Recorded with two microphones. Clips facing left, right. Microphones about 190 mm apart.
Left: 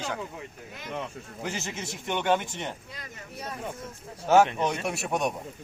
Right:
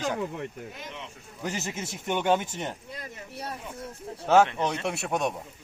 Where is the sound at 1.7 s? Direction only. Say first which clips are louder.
Right 2 dB; 5° right (ahead or behind).